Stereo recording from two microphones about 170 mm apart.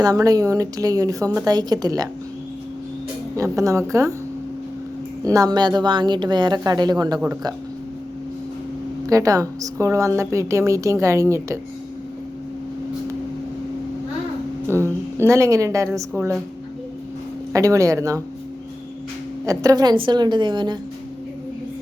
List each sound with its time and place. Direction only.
0.0 s a woman's voice: 20° right (ahead or behind)
3.3 s a woman's voice: 20° right (ahead or behind)
5.2 s a woman's voice: 20° right (ahead or behind)
9.0 s a woman's voice: 20° right (ahead or behind)
14.7 s a woman's voice: 15° right (ahead or behind)
17.5 s a woman's voice: 20° right (ahead or behind)
19.5 s a woman's voice: 20° right (ahead or behind)